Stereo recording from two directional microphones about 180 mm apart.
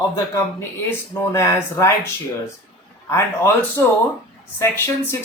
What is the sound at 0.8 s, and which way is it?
Speech, 15° left (ahead or behind).